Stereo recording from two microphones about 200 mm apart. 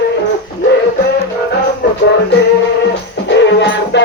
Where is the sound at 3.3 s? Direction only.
60° left (ahead or behind).